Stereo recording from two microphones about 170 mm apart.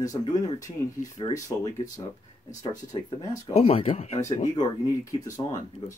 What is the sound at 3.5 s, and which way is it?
Speech, 35° left (ahead or behind).